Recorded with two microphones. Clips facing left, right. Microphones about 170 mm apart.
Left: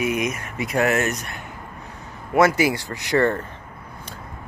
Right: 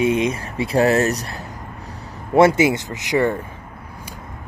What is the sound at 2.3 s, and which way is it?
Speech, 25° right (ahead or behind).